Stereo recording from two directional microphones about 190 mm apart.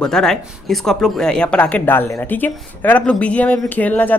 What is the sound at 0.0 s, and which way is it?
Speech, 5° left (ahead or behind).